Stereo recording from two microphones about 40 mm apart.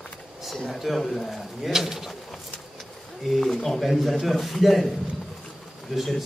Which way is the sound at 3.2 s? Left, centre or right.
Centre.